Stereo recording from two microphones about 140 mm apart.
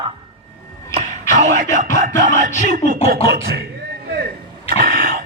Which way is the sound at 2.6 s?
80° right.